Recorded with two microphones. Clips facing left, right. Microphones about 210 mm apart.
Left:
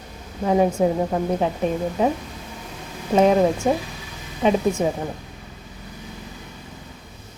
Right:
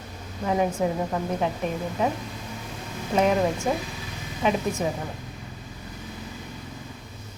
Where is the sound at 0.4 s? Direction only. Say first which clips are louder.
Left 6 dB; 30° left (ahead or behind).